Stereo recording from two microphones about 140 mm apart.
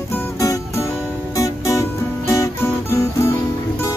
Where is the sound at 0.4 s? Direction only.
25° left (ahead or behind).